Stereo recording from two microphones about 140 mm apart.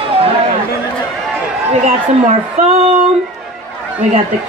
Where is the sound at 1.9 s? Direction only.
55° right (ahead or behind).